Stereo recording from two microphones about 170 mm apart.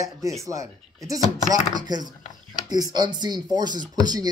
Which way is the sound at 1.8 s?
25° right (ahead or behind).